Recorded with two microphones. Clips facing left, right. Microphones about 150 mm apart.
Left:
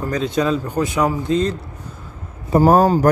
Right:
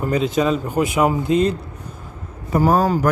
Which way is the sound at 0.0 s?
10° right (ahead or behind).